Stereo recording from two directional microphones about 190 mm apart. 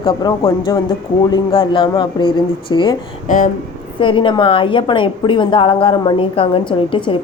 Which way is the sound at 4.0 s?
25° left (ahead or behind).